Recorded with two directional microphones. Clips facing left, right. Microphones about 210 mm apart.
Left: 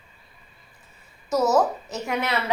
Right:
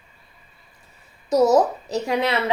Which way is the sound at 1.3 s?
20° right (ahead or behind).